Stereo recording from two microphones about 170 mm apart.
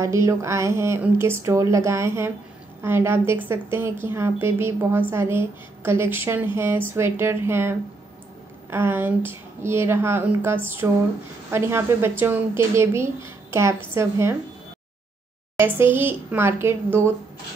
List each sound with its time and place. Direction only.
0.0 s a woman's voice: 15° right (ahead or behind)
15.5 s a woman's voice: 15° right (ahead or behind)